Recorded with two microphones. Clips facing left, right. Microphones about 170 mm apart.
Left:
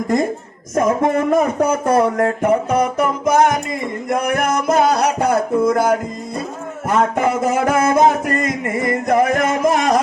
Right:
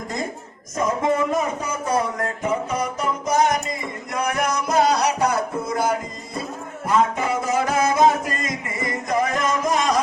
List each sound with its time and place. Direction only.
0.8 s speech: 55° left (ahead or behind)
6.8 s music: 55° left (ahead or behind)